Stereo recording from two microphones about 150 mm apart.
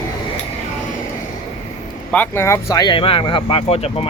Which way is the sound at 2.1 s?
15° left (ahead or behind).